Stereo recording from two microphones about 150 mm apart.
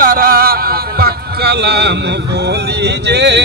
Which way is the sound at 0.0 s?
70° right (ahead or behind).